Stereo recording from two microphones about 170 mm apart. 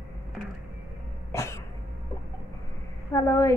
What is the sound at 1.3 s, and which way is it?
Cough, 15° left (ahead or behind).